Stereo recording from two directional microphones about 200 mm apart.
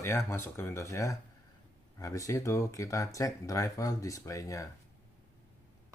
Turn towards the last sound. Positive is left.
turn(degrees=15)  # may be behind; listen again after turning